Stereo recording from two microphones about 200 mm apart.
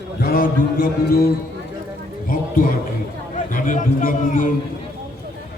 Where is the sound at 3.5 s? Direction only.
40° left (ahead or behind).